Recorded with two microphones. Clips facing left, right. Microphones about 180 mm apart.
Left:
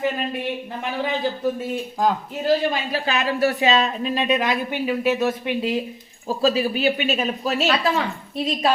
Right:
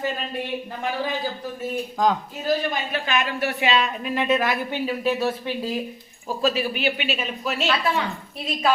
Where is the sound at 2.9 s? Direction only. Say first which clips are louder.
Left 2 dB; 35° left (ahead or behind).